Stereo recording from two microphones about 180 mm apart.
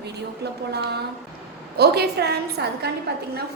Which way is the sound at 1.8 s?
65° right (ahead or behind).